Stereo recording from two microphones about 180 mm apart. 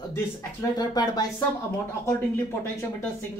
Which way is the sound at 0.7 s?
20° left (ahead or behind).